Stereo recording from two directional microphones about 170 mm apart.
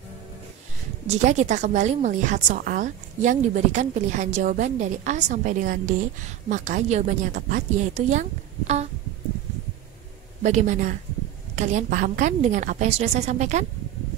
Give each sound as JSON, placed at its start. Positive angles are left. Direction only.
{"t": 1.0, "sound": "a woman's voice", "side_deg": -45}
{"t": 10.4, "sound": "a woman's voice", "side_deg": -45}